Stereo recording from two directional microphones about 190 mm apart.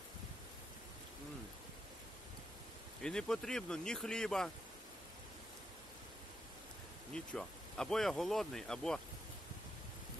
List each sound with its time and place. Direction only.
3.0 s speech: 5° left (ahead or behind)
7.2 s speech: 5° left (ahead or behind)